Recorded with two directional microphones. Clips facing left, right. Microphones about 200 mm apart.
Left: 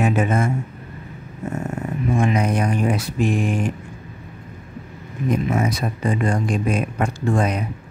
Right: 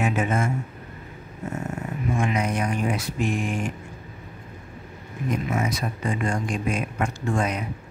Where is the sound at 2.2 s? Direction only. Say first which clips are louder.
Left 5 dB; 35° left (ahead or behind).